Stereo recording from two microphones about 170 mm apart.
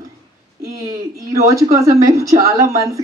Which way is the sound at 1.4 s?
20° right (ahead or behind).